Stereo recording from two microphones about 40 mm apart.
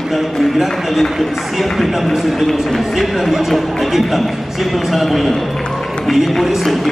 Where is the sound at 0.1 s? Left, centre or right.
Centre.